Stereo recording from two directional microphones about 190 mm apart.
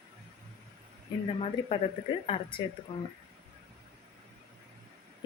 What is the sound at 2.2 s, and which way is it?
Speech, 30° left (ahead or behind).